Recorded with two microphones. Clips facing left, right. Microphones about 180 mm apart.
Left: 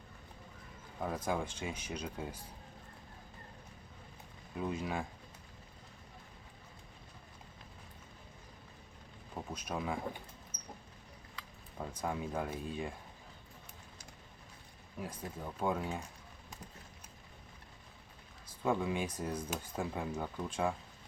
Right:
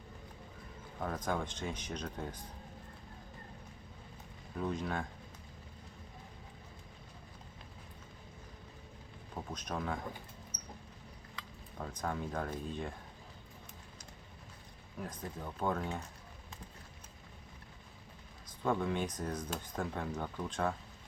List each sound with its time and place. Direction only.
0.9 s speech: 10° left (ahead or behind)
4.5 s speech: 5° left (ahead or behind)
9.3 s speech: 5° left (ahead or behind)
11.8 s speech: 10° left (ahead or behind)
14.9 s speech: 10° left (ahead or behind)
18.4 s speech: 10° left (ahead or behind)